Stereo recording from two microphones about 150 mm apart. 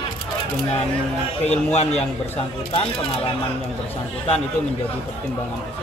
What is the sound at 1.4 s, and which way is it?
Speech, 45° left (ahead or behind).